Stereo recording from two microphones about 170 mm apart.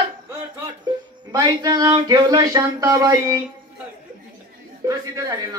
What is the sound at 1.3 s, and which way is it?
Speech, 20° right (ahead or behind).